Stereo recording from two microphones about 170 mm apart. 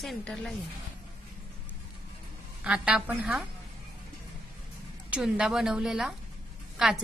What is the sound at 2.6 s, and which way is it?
Speech, 5° right (ahead or behind).